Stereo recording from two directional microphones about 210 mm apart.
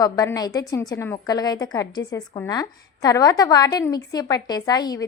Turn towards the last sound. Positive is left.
turn(degrees=20)  # may be behind; listen again after turning